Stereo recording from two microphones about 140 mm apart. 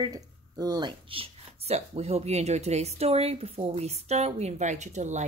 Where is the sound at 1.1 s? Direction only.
45° right (ahead or behind).